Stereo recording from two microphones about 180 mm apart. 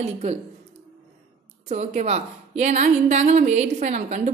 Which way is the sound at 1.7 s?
40° right (ahead or behind).